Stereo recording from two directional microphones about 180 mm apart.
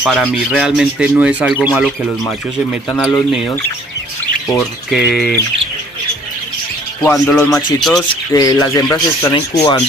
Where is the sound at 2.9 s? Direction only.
10° left (ahead or behind).